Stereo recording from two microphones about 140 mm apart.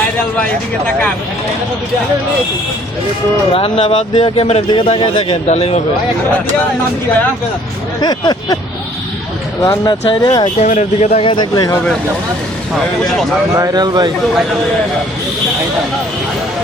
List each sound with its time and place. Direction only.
3.5 s speech: 40° left (ahead or behind)
5.5 s speech: 50° left (ahead or behind)
8.0 s speech: 30° left (ahead or behind)
9.6 s speech: 30° left (ahead or behind)
10.6 s speech: 55° left (ahead or behind); by 11.7 s 30° left (ahead or behind)
13.6 s speech: 30° right (ahead or behind)